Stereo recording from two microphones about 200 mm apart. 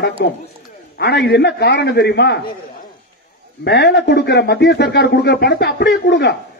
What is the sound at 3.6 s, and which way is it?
A man's voice, 55° left (ahead or behind).